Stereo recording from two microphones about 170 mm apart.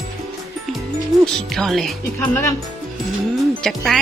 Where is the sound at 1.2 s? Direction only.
Centre (ahead or behind).